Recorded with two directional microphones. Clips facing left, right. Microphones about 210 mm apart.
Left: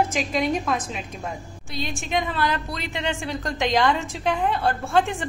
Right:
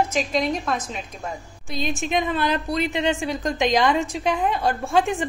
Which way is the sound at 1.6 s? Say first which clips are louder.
Right 5 dB; 20° right (ahead or behind).